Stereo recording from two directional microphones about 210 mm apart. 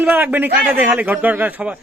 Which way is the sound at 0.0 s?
10° right (ahead or behind).